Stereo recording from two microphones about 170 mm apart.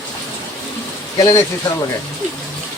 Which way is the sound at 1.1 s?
20° left (ahead or behind).